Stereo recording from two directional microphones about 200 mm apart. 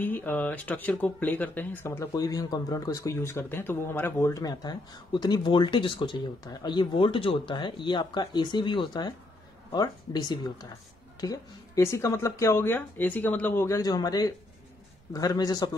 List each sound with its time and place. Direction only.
0.0 s speech: 10° left (ahead or behind)